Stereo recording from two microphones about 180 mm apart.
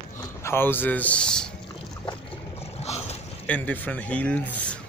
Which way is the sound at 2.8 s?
35° left (ahead or behind).